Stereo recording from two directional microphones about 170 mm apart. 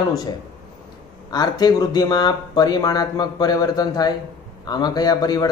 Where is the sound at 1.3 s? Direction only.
25° left (ahead or behind).